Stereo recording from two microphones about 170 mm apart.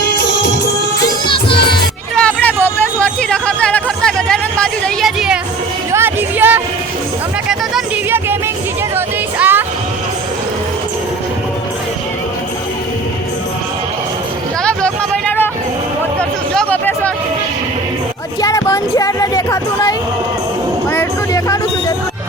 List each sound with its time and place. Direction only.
1.2 s music: 30° left (ahead or behind)
2.1 s music: 10° left (ahead or behind)
5.9 s music: 15° right (ahead or behind)
9.0 s music: 10° right (ahead or behind)
14.6 s vehicle: 5° left (ahead or behind)
16.6 s a sound: 10° left (ahead or behind)
18.3 s a sound: 20° left (ahead or behind)
20.9 s vehicle: 15° left (ahead or behind)